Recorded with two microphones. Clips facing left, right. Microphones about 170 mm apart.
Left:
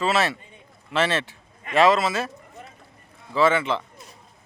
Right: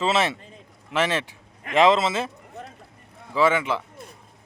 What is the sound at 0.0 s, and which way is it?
A man's voice, 20° right (ahead or behind).